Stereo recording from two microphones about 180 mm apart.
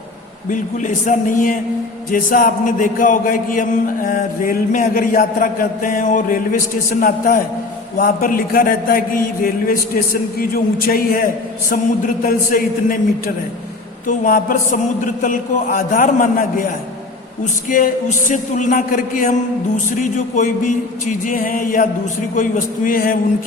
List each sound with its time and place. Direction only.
0.5 s a man's voice: 45° left (ahead or behind)
7.9 s a man's voice: 50° left (ahead or behind)